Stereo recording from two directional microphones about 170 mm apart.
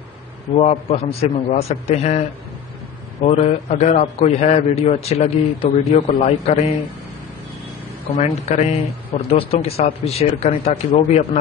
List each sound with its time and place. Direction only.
0.6 s a man's voice: 40° left (ahead or behind)
8.2 s a man's voice: 40° left (ahead or behind)